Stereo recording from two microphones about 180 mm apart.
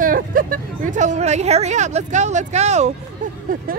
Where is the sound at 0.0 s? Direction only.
50° right (ahead or behind).